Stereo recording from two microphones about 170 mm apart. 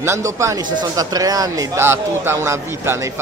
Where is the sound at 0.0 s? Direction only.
15° right (ahead or behind).